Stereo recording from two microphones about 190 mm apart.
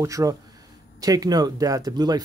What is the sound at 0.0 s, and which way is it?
Speech, 15° right (ahead or behind).